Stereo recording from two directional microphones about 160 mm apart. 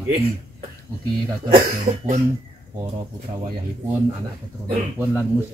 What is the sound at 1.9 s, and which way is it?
Speech, 25° right (ahead or behind).